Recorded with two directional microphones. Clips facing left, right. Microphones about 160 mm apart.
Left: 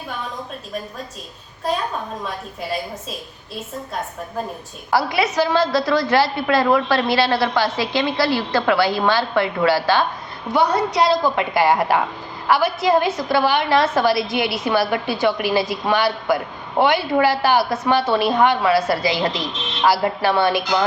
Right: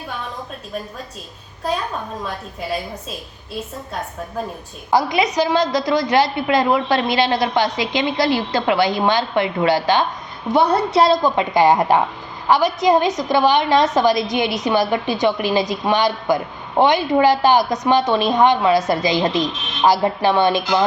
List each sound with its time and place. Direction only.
4.9 s a woman's voice: 15° right (ahead or behind)